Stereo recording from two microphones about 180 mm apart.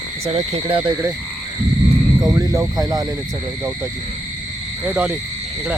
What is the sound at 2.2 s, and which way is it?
Speech, 20° right (ahead or behind).